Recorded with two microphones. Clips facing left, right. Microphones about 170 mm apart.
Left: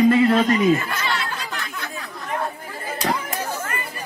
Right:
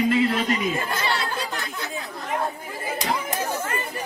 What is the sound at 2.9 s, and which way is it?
Chatter, 15° right (ahead or behind).